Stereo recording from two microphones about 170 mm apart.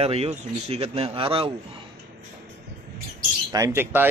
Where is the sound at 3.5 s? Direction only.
15° right (ahead or behind).